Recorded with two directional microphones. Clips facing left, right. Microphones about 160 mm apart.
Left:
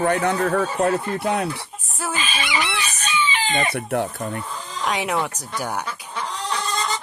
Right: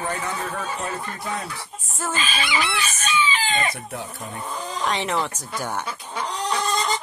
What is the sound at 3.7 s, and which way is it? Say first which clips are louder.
Speech: left 9 dB; 65° left (ahead or behind).